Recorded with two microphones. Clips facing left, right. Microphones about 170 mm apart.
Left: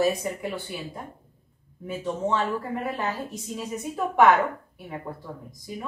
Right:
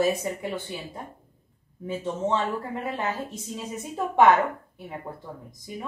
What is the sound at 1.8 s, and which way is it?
A woman's voice, 25° right (ahead or behind).